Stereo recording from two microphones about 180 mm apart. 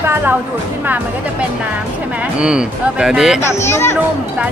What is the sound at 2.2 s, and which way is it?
Speech, 5° right (ahead or behind).